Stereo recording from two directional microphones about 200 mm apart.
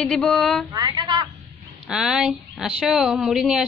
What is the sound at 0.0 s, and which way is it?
Speech, centre (ahead or behind).